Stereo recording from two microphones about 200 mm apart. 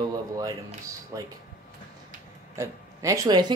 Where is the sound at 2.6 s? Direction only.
15° right (ahead or behind).